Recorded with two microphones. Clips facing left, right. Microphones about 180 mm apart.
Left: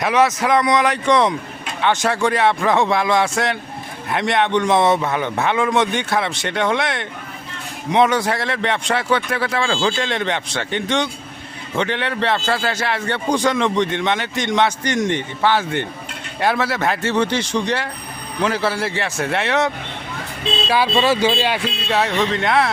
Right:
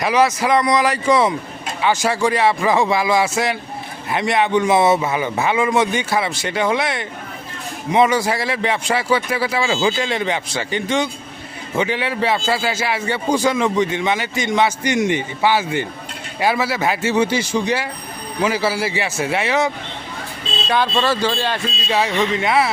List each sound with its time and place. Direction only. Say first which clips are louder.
0.0 s a man's voice: even; centre (ahead or behind)
21.6 s speech: left 1 dB; 65° left (ahead or behind)
21.8 s a man's voice: right 1 dB; centre (ahead or behind)